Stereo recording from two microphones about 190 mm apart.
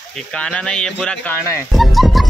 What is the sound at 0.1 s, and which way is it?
Speech, 5° left (ahead or behind).